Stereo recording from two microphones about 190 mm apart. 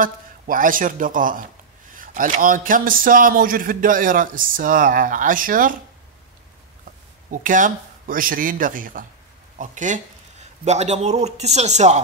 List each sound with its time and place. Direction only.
0.0 s a man's voice: 45° right (ahead or behind)
7.2 s a man's voice: 45° right (ahead or behind)